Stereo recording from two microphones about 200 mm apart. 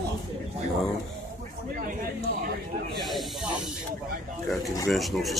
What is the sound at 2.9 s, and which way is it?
Snake, centre (ahead or behind).